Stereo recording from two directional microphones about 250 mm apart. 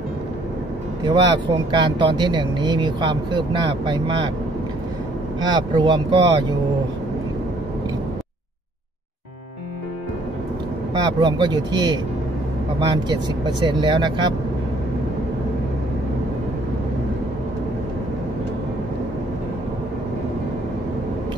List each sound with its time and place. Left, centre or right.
1.0 s speech: centre
5.4 s speech: centre
11.0 s speech: centre